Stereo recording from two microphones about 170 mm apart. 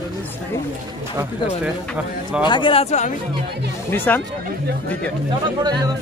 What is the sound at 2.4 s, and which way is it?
Speech, 25° left (ahead or behind).